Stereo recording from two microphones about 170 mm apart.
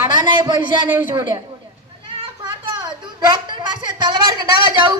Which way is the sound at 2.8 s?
25° right (ahead or behind).